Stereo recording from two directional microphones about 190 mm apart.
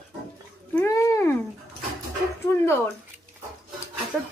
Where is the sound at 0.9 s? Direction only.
15° left (ahead or behind).